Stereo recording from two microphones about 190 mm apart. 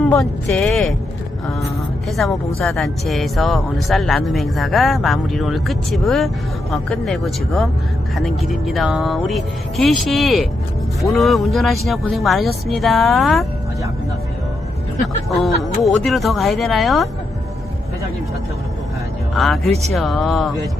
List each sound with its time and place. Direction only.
0.1 s speech: centre (ahead or behind)
15.8 s speech: centre (ahead or behind)
19.3 s speech: centre (ahead or behind)